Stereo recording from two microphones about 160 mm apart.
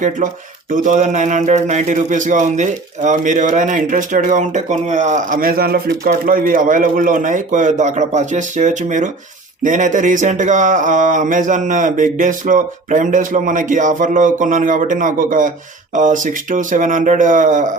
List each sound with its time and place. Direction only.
0.7 s speech: 55° right (ahead or behind)